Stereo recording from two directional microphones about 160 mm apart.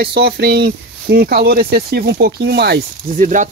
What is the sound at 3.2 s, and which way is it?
Speech, 50° right (ahead or behind).